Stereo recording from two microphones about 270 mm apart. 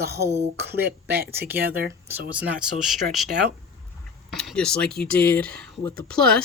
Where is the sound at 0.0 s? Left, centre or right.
Centre.